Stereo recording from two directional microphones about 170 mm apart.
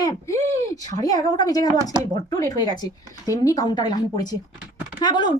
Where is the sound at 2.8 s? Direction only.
20° left (ahead or behind).